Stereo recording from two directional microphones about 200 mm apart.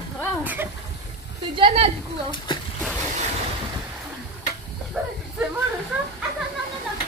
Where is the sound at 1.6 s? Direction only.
30° right (ahead or behind).